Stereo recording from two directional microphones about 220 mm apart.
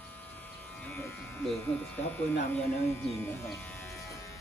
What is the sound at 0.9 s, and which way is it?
Speech, 5° left (ahead or behind).